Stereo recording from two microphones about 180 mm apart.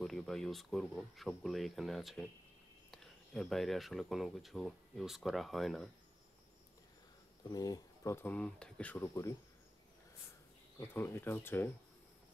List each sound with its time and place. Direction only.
0.0 s speech: centre (ahead or behind)
7.5 s speech: 20° left (ahead or behind)
10.8 s speech: 15° left (ahead or behind)